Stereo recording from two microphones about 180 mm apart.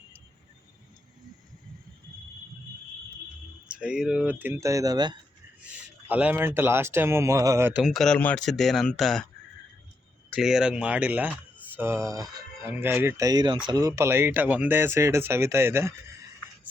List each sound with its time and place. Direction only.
3.7 s speech: 5° right (ahead or behind); by 5.1 s 20° right (ahead or behind)
6.1 s speech: 10° right (ahead or behind)
7.8 s speech: centre (ahead or behind)
10.2 s speech: centre (ahead or behind)